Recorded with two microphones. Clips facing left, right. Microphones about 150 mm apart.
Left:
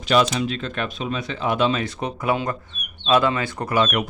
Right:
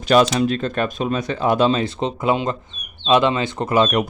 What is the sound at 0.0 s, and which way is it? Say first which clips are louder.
Speech: right 4 dB; 45° right (ahead or behind).